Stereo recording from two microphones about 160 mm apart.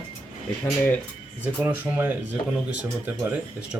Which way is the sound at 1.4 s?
10° right (ahead or behind).